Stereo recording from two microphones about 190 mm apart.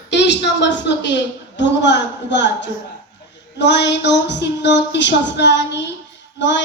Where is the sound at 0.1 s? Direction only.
65° left (ahead or behind).